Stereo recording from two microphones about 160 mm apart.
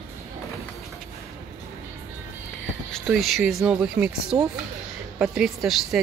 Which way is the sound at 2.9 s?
Centre (ahead or behind).